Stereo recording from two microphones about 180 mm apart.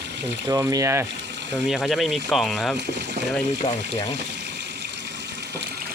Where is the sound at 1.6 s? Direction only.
Centre (ahead or behind).